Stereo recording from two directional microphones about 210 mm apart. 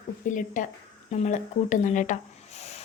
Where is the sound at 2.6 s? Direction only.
30° left (ahead or behind).